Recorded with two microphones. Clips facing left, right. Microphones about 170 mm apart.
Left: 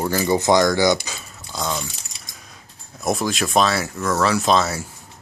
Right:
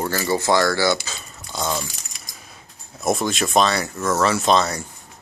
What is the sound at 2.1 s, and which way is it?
Coin, 30° left (ahead or behind).